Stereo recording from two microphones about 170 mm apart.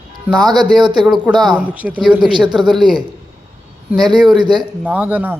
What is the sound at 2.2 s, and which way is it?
Speech, 25° right (ahead or behind).